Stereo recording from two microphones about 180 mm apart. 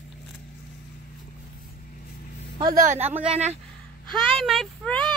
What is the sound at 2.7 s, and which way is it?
Speech, 45° right (ahead or behind).